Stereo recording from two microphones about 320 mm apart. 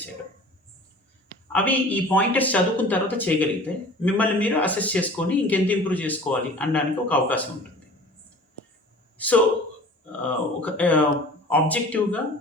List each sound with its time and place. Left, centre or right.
1.5 s speech: centre
9.1 s speech: centre
10.6 s speech: centre